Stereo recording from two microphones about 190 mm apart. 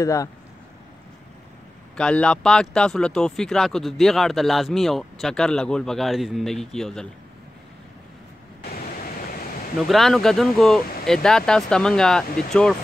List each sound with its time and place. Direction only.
0.0 s speech: 15° left (ahead or behind)
2.0 s speech: 5° left (ahead or behind)
9.8 s speech: centre (ahead or behind)